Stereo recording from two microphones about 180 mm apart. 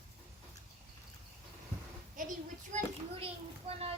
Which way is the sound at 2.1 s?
50° right (ahead or behind).